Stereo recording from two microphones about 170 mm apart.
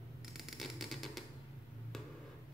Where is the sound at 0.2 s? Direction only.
Centre (ahead or behind).